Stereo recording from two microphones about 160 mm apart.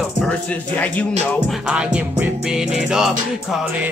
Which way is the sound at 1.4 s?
5° right (ahead or behind).